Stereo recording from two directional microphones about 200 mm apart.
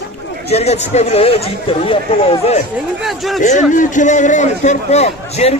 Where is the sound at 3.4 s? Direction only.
40° left (ahead or behind).